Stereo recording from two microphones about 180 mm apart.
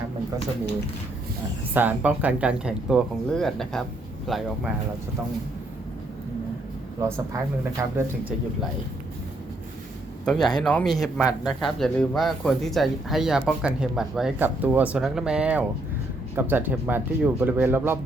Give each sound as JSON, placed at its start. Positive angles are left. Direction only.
{"t": 1.7, "sound": "speech", "side_deg": -10}
{"t": 7.0, "sound": "speech", "side_deg": -15}
{"t": 10.2, "sound": "speech", "side_deg": 0}